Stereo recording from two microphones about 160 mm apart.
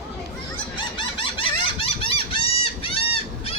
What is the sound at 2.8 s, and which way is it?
Goose, 35° left (ahead or behind).